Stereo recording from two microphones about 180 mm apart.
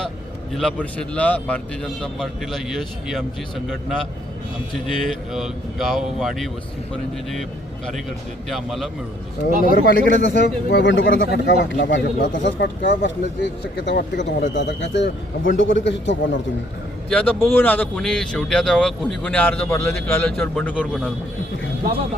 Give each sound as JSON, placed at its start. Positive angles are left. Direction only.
{"t": 0.5, "sound": "speech", "side_deg": 5}
{"t": 8.4, "sound": "speech", "side_deg": 0}
{"t": 9.5, "sound": "speech", "side_deg": -50}
{"t": 10.4, "sound": "speech", "side_deg": 65}
{"t": 13.8, "sound": "speech", "side_deg": 75}
{"t": 14.5, "sound": "a man's voice", "side_deg": 80}
{"t": 17.1, "sound": "speech", "side_deg": 10}